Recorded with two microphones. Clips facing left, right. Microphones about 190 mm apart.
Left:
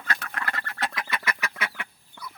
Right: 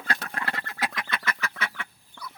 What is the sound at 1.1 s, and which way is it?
Duck, 10° left (ahead or behind).